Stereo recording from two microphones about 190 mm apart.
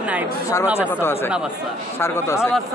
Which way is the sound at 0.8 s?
10° left (ahead or behind).